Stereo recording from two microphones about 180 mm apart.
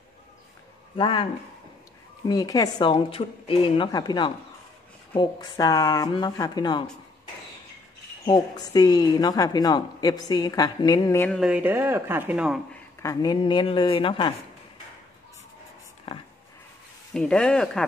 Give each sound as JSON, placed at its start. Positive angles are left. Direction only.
{"t": 0.9, "sound": "a woman's voice", "side_deg": 30}
{"t": 8.3, "sound": "a woman's voice", "side_deg": 20}
{"t": 11.2, "sound": "speech", "side_deg": 0}
{"t": 12.7, "sound": "a woman's voice", "side_deg": 20}
{"t": 16.1, "sound": "speech", "side_deg": 30}
{"t": 17.1, "sound": "speech", "side_deg": 5}